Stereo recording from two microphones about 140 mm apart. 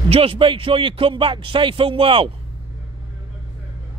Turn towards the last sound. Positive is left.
turn(degrees=-40)  # may be behind; listen again after turning